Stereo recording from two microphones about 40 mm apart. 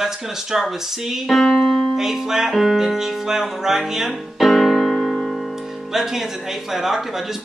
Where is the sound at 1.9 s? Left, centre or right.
Centre.